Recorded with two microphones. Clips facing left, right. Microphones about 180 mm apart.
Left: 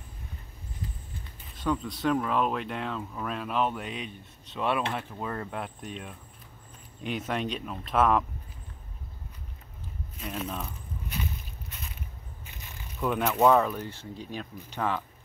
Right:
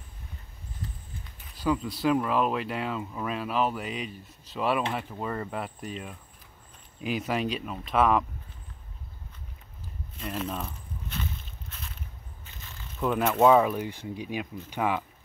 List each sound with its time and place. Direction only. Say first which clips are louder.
1.6 s speech: right 2 dB; centre (ahead or behind)
10.1 s speech: right 2 dB; centre (ahead or behind)
12.4 s a sound: even; 15° left (ahead or behind)
13.0 s speech: right 1 dB; centre (ahead or behind)